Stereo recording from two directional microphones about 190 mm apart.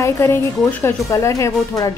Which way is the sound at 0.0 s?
10° left (ahead or behind).